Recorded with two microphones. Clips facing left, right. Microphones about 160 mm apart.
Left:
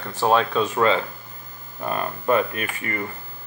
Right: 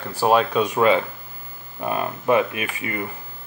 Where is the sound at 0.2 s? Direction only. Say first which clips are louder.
Right 2 dB; 10° right (ahead or behind).